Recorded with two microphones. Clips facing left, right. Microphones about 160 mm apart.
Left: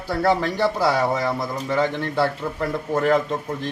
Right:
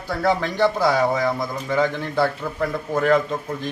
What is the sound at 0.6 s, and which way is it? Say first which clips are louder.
Speech: right 2 dB; 5° left (ahead or behind).